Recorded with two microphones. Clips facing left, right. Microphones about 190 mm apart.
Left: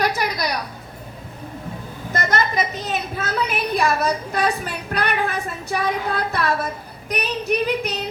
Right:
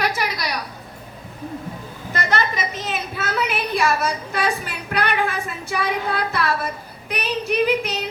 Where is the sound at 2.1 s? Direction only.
45° left (ahead or behind).